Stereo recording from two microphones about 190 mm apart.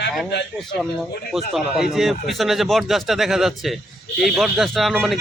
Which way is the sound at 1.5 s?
Centre (ahead or behind).